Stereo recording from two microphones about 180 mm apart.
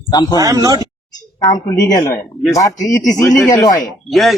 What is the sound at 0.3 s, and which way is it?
Speech, 20° right (ahead or behind).